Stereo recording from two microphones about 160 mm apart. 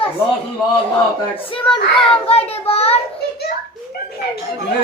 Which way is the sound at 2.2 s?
40° left (ahead or behind).